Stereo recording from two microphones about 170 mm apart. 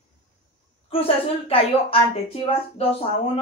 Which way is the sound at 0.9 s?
35° left (ahead or behind).